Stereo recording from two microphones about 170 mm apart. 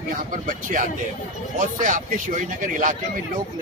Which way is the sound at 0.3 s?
50° right (ahead or behind).